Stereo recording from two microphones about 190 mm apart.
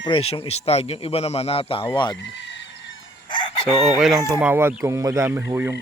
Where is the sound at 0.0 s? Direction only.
30° left (ahead or behind).